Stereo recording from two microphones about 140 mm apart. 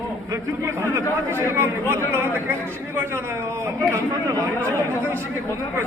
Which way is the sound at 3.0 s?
20° right (ahead or behind).